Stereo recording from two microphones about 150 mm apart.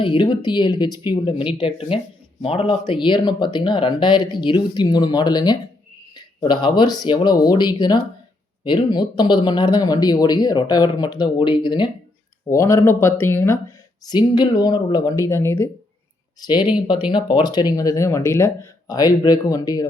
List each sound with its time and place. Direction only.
0.0 s speech: 35° left (ahead or behind)
12.5 s speech: 20° left (ahead or behind)
14.0 s speech: 30° left (ahead or behind)
16.4 s speech: 30° left (ahead or behind)